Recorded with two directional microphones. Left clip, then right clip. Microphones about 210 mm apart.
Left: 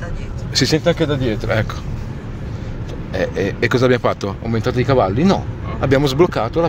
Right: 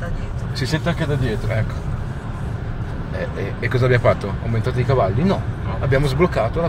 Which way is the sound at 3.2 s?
55° left (ahead or behind).